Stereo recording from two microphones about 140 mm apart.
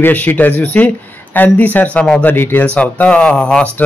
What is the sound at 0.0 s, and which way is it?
A man's voice, 15° left (ahead or behind).